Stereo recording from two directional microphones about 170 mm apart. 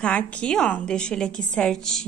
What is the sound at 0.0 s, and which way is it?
A woman's voice, 5° left (ahead or behind).